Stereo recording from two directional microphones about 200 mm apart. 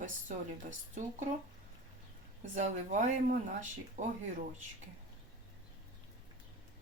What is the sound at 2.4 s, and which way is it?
A woman's voice, 40° right (ahead or behind).